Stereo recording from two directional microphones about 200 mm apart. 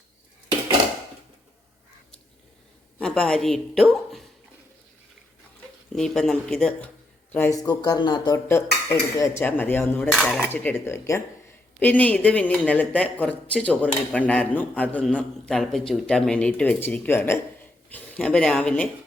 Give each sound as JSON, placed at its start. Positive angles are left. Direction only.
{"t": 3.0, "sound": "a woman's voice", "side_deg": 5}
{"t": 5.9, "sound": "a woman's voice", "side_deg": 5}
{"t": 7.3, "sound": "a woman's voice", "side_deg": 15}